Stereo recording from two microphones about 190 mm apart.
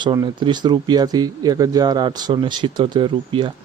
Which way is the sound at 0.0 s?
20° right (ahead or behind).